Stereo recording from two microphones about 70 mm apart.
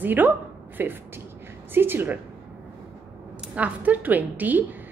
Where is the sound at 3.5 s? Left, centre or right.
Right.